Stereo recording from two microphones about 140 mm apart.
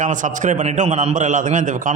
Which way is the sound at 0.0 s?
65° right (ahead or behind).